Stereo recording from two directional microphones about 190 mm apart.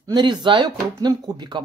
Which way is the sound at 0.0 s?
20° right (ahead or behind).